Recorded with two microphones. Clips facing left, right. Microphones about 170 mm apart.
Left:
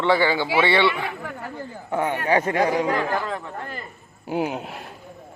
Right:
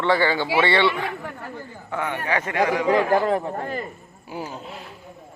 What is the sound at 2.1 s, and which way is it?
Speech, 35° left (ahead or behind).